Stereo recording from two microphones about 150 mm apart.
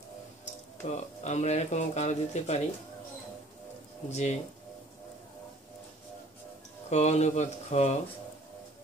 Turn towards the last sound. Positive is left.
turn(degrees=50)  # may be behind; listen again after turning